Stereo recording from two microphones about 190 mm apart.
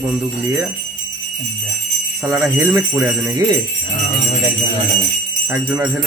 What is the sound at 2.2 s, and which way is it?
Speech, 15° right (ahead or behind).